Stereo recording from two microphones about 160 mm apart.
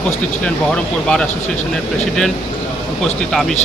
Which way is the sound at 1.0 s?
5° left (ahead or behind).